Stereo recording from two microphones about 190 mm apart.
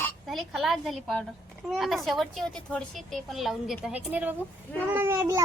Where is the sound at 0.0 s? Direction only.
Centre (ahead or behind).